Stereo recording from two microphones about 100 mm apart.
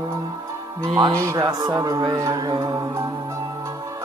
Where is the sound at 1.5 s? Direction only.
45° right (ahead or behind).